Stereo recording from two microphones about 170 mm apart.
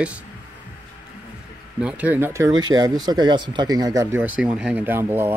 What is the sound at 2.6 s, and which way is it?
Speech, 25° right (ahead or behind).